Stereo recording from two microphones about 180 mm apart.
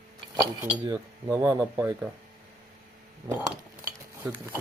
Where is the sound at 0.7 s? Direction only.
20° right (ahead or behind).